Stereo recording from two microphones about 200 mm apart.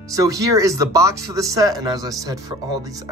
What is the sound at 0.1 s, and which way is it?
Speech, 15° right (ahead or behind).